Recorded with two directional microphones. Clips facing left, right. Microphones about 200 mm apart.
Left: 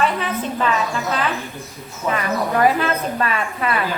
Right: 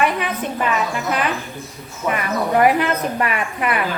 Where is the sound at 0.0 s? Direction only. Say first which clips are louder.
Even; 15° right (ahead or behind).